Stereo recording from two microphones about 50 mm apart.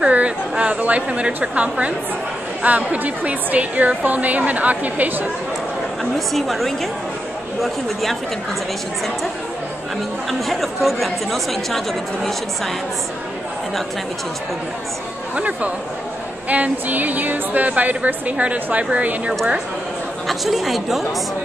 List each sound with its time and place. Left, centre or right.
0.0 s a woman's voice: right
6.1 s speech: centre
10.4 s speech: centre
15.3 s a woman's voice: right
20.2 s speech: centre